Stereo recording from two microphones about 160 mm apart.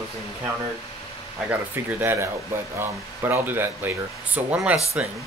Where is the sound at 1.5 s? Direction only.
10° right (ahead or behind).